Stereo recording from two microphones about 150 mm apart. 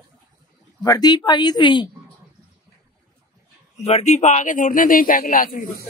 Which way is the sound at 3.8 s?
45° left (ahead or behind).